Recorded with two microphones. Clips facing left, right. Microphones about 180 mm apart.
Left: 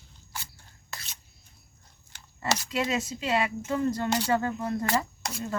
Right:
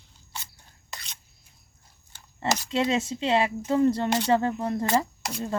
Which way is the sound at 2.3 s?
30° right (ahead or behind).